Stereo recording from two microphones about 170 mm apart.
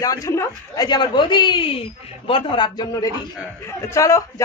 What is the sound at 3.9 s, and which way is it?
Speech, 20° left (ahead or behind).